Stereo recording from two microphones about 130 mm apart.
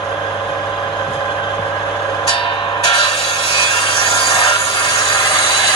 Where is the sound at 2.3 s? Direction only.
45° left (ahead or behind).